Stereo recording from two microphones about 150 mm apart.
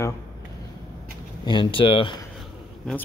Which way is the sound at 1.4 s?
30° left (ahead or behind).